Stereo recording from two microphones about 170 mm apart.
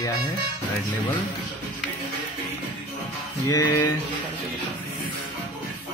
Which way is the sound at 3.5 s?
20° left (ahead or behind).